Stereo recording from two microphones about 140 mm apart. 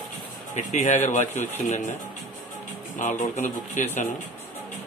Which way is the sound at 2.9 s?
65° left (ahead or behind).